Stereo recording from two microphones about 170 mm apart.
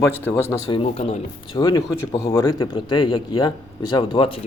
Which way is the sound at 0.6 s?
35° left (ahead or behind).